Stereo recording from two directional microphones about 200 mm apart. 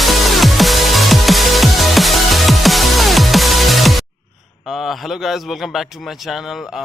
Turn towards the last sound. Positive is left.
turn(degrees=0)  # may be behind; listen again after turning